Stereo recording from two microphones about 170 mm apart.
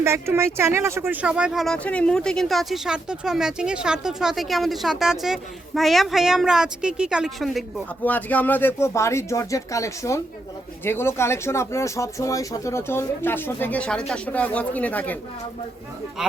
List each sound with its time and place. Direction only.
0.0 s speech: 15° right (ahead or behind); by 15.2 s 10° left (ahead or behind)